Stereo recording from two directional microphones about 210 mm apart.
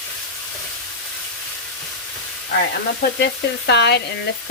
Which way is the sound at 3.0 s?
55° left (ahead or behind).